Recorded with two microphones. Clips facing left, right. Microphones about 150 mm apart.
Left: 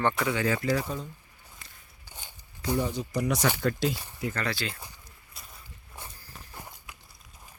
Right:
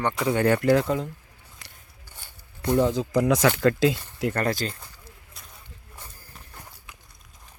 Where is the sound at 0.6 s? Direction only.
80° right.